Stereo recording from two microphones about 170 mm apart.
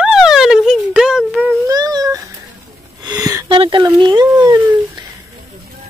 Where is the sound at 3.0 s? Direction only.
20° right (ahead or behind).